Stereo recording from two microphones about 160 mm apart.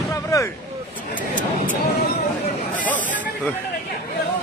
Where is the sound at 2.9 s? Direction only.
55° left (ahead or behind).